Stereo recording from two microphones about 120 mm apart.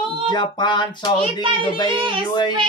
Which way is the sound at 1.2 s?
45° right (ahead or behind).